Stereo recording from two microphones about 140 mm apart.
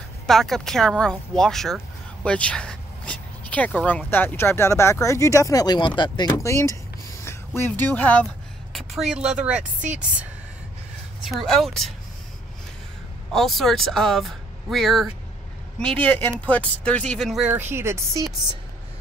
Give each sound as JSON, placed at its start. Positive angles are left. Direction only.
{"t": 0.3, "sound": "speech", "side_deg": 5}
{"t": 6.3, "sound": "speech", "side_deg": 20}
{"t": 8.7, "sound": "a woman's voice", "side_deg": 0}
{"t": 11.2, "sound": "speech", "side_deg": 0}
{"t": 13.3, "sound": "speech", "side_deg": 0}
{"t": 17.6, "sound": "speech", "side_deg": -15}